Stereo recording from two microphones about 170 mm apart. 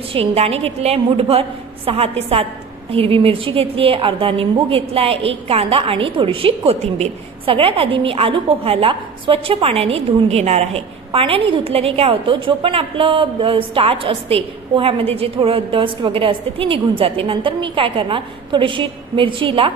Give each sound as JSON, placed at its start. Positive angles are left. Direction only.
{"t": 0.1, "sound": "a woman's voice", "side_deg": -35}